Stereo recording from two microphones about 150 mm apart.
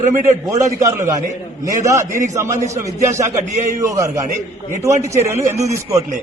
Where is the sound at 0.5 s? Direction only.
20° right (ahead or behind).